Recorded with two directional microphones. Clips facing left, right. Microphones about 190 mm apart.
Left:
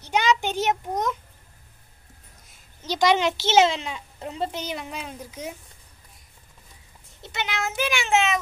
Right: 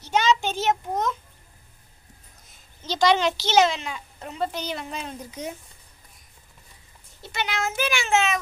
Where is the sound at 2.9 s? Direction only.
15° left (ahead or behind).